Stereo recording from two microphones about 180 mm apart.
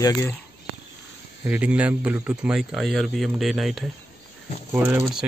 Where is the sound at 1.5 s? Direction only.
5° right (ahead or behind).